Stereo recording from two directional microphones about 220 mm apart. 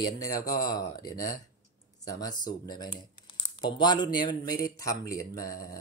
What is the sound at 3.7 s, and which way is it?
Speech, 20° left (ahead or behind).